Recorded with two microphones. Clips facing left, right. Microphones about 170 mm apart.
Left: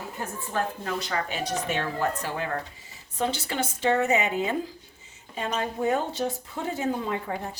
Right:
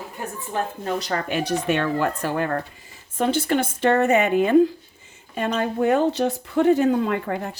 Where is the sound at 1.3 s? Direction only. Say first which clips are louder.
Right 7 dB; 65° right (ahead or behind).